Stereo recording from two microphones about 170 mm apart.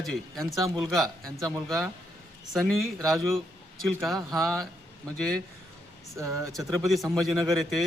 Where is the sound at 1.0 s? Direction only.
20° right (ahead or behind).